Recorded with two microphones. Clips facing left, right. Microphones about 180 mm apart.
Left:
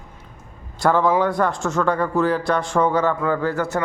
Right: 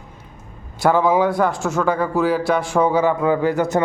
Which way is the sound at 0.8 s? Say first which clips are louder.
Right 2 dB; 5° right (ahead or behind).